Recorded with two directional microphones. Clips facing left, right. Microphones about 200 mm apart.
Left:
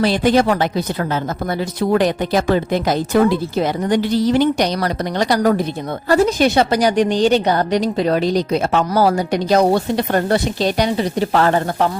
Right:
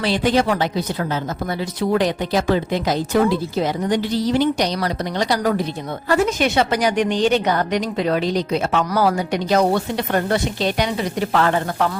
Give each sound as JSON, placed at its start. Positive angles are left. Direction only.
{"t": 0.0, "sound": "a woman's voice", "side_deg": 45}
{"t": 1.9, "sound": "a woman's voice", "side_deg": 55}
{"t": 6.1, "sound": "a woman's voice", "side_deg": 35}